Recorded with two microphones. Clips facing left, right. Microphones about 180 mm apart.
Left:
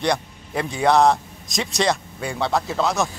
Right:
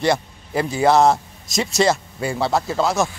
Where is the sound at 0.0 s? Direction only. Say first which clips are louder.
Right 3 dB; 5° right (ahead or behind).